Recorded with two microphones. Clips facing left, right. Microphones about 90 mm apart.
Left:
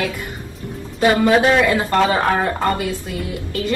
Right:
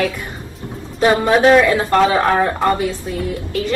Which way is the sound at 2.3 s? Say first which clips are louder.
Right 3 dB; 20° right (ahead or behind).